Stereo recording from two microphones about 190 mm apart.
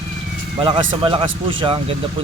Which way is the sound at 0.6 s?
25° right (ahead or behind).